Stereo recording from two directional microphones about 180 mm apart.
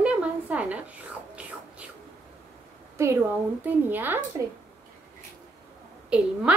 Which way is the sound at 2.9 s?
15° right (ahead or behind).